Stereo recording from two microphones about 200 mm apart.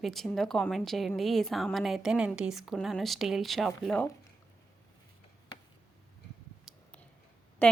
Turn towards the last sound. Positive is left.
turn(degrees=10)  # may be behind; listen again after turning